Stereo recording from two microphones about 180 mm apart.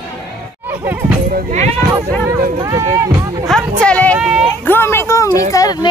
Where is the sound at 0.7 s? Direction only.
10° right (ahead or behind).